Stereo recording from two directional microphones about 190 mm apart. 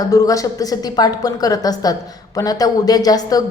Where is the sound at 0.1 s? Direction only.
15° left (ahead or behind).